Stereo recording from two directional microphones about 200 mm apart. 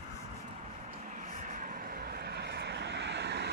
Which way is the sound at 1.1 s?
40° right (ahead or behind).